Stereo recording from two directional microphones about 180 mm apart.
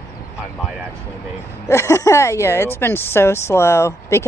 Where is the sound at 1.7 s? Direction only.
15° left (ahead or behind).